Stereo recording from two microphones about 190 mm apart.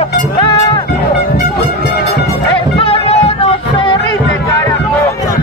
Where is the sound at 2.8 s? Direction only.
30° left (ahead or behind).